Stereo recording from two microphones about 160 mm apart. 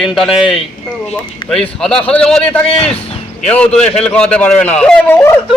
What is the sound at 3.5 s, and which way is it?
Speech, 10° left (ahead or behind).